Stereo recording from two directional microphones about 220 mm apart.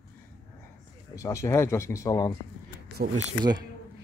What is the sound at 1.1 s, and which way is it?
Speech, 15° left (ahead or behind).